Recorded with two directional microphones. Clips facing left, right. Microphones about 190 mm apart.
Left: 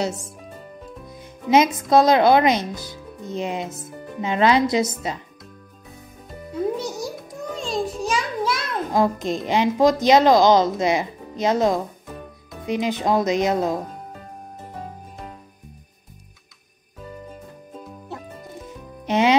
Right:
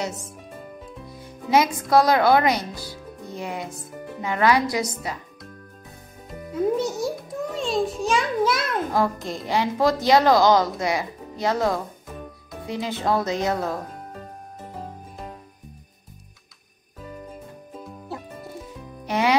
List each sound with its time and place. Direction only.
1.1 s music: 20° left (ahead or behind)
1.9 s speech: 20° left (ahead or behind)
6.5 s music: centre (ahead or behind)
8.9 s speech: 20° left (ahead or behind)
17.7 s music: 5° right (ahead or behind)
19.0 s music: 20° left (ahead or behind)